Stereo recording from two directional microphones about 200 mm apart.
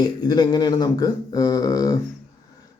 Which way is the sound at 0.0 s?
20° left (ahead or behind).